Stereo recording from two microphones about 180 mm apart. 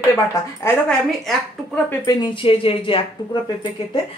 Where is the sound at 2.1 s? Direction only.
25° left (ahead or behind).